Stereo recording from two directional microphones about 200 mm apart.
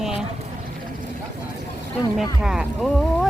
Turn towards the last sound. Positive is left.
turn(degrees=-5)  # may be behind; listen again after turning